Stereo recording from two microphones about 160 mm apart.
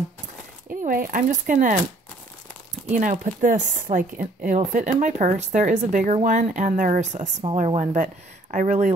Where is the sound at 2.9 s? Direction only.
55° right (ahead or behind).